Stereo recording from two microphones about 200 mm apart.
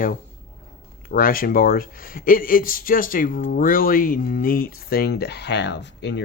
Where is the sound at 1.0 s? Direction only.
45° left (ahead or behind).